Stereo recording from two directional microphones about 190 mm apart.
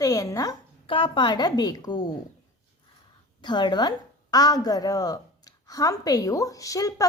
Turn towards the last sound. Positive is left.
turn(degrees=20)  # may be behind; listen again after turning